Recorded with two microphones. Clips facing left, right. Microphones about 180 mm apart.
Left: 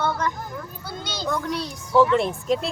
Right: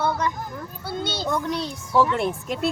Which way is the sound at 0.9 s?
25° right (ahead or behind).